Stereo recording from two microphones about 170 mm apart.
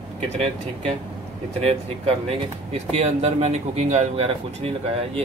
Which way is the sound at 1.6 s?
35° right (ahead or behind).